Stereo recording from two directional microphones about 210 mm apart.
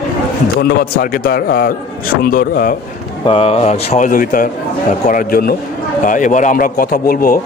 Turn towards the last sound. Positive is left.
turn(degrees=45)  # may be behind; listen again after turning